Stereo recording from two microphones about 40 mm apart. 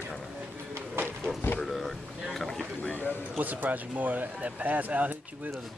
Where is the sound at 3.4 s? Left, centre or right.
Right.